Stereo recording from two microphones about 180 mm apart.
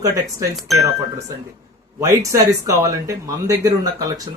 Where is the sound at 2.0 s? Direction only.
15° right (ahead or behind).